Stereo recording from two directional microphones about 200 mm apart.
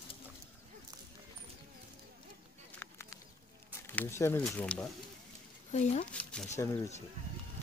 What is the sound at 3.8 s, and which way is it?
Speech, 10° left (ahead or behind).